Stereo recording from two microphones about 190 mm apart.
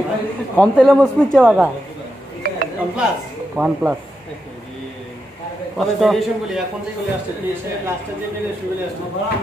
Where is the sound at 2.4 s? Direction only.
55° right (ahead or behind).